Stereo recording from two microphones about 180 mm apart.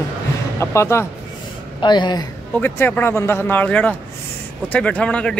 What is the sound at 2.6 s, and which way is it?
Speech, 10° left (ahead or behind).